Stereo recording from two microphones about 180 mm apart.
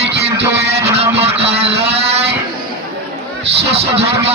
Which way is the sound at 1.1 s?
35° right (ahead or behind).